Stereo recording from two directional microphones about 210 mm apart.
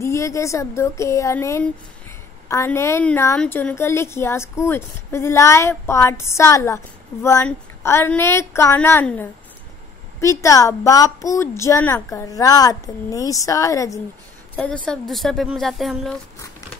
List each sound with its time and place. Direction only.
0.0 s a woman's voice: 15° left (ahead or behind)
14.5 s a woman's voice: 5° left (ahead or behind)